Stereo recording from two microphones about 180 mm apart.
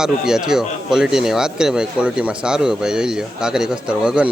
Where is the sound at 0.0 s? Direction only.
5° right (ahead or behind).